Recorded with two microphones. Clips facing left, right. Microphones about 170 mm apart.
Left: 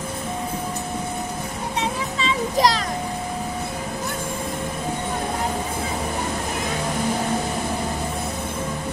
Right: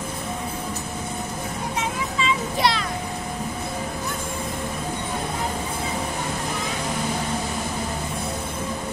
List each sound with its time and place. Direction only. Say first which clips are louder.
1.8 s music: left 2 dB; 35° left (ahead or behind)